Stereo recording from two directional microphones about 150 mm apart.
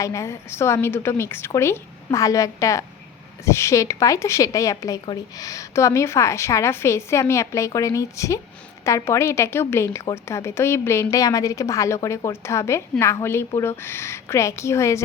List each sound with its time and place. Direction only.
0.0 s a woman's voice: 20° left (ahead or behind)